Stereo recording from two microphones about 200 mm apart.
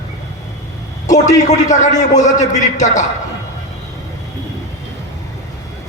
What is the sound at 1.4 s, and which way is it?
A man's voice, 35° left (ahead or behind).